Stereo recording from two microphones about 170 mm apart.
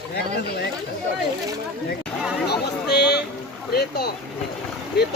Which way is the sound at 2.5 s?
75° left (ahead or behind).